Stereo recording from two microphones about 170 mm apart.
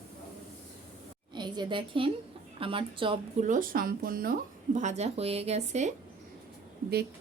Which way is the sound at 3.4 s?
55° right (ahead or behind).